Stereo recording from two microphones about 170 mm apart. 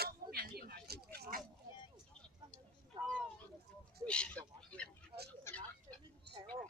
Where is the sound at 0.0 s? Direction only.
65° right (ahead or behind).